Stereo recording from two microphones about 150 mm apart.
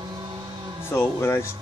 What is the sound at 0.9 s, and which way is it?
Speech, 15° left (ahead or behind).